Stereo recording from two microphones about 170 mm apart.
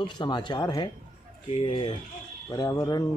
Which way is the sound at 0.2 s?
25° left (ahead or behind).